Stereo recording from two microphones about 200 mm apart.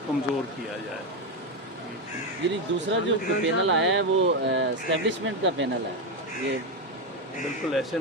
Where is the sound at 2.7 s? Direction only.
65° right (ahead or behind).